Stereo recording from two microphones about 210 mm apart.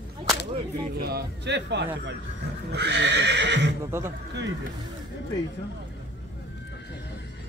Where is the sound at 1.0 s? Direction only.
50° right (ahead or behind).